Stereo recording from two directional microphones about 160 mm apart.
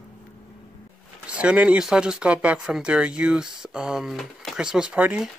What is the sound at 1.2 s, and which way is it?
Speech, 5° right (ahead or behind).